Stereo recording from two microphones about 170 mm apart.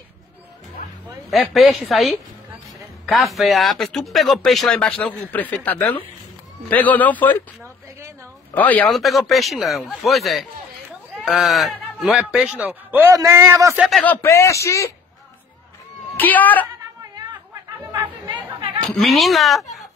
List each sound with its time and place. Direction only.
1.3 s speech: centre (ahead or behind)
8.5 s speech: 10° left (ahead or behind); by 13.8 s 15° right (ahead or behind)
13.8 s speech: 5° left (ahead or behind)
16.2 s speech: 10° left (ahead or behind)
18.9 s speech: centre (ahead or behind)